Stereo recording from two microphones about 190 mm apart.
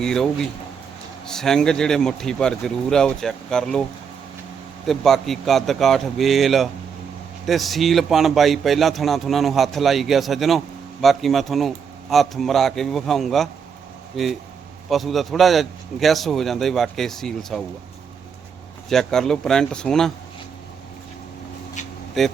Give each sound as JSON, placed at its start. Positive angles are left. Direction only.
{"t": 0.0, "sound": "a man's voice", "side_deg": 5}
{"t": 4.9, "sound": "a man's voice", "side_deg": 0}
{"t": 18.9, "sound": "a man's voice", "side_deg": 0}
{"t": 22.2, "sound": "a man's voice", "side_deg": 0}